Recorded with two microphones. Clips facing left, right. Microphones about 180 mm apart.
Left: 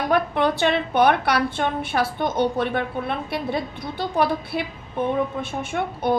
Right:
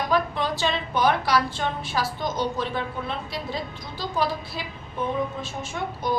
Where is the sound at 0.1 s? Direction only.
60° left (ahead or behind).